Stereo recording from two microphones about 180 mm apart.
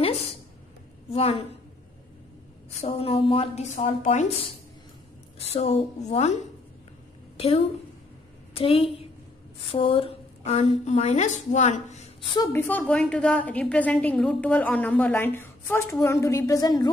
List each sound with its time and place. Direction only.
1.1 s a woman's voice: 30° left (ahead or behind)
2.8 s a woman's voice: 30° left (ahead or behind)
7.3 s a woman's voice: 35° left (ahead or behind)
12.4 s a woman's voice: 10° left (ahead or behind)